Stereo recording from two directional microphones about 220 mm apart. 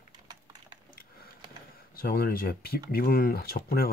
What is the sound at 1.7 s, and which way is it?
Speech, 45° left (ahead or behind).